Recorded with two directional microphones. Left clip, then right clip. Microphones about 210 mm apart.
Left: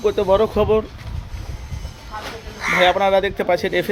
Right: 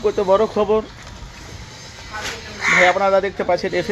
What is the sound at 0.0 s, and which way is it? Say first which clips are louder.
Speech: even; 10° left (ahead or behind).